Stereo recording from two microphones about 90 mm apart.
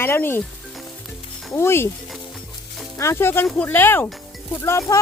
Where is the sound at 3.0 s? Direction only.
30° left (ahead or behind).